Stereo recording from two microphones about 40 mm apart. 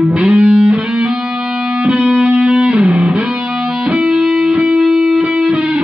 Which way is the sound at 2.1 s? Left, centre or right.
Right.